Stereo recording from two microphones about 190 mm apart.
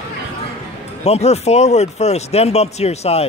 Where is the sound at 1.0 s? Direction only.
35° left (ahead or behind).